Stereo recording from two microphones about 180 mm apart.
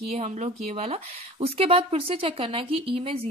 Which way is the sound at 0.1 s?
40° right (ahead or behind).